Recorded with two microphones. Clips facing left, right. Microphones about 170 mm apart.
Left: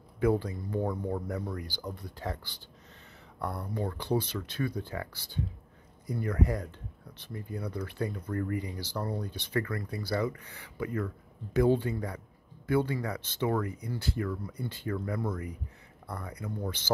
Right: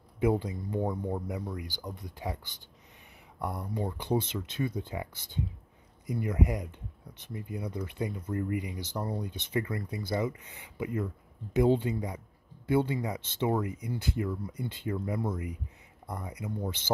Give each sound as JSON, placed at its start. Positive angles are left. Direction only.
{"t": 0.2, "sound": "speech", "side_deg": -20}